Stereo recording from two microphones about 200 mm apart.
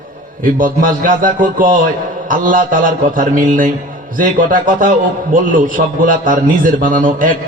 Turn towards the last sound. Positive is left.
turn(degrees=-40)  # may be behind; listen again after turning